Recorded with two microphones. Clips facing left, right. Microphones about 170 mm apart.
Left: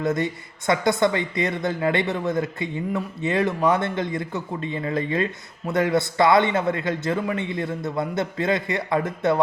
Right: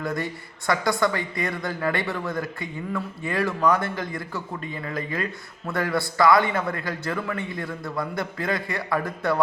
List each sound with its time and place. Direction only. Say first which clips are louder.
0.0 s speech: left 5 dB; 20° left (ahead or behind)